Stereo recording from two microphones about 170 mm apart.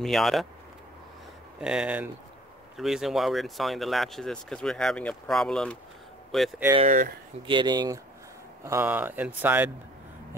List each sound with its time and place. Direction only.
0.0 s speech: centre (ahead or behind)
1.6 s speech: 5° right (ahead or behind)
7.4 s speech: 25° right (ahead or behind)
8.6 s speech: 10° right (ahead or behind)